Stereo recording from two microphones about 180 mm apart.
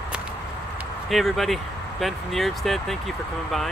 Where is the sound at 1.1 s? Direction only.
Centre (ahead or behind).